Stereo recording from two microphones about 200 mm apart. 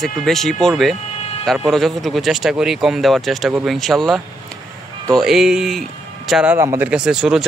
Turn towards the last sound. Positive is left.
turn(degrees=-5)  # may be behind; listen again after turning